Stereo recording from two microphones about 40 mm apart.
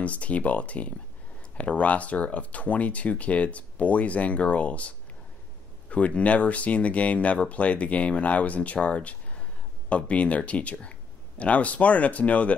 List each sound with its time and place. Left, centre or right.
0.0 s speech: left